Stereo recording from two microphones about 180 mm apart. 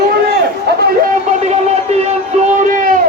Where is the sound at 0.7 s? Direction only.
70° right (ahead or behind).